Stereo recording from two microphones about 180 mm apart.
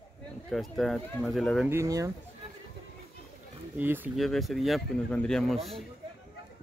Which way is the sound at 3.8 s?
10° right (ahead or behind).